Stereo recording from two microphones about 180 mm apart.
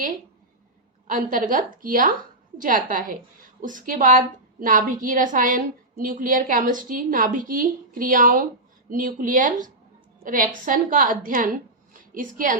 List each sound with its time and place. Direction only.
1.0 s a woman's voice: 50° right (ahead or behind)